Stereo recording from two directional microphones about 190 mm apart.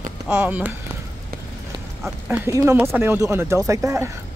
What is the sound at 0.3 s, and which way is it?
Speech, 10° right (ahead or behind).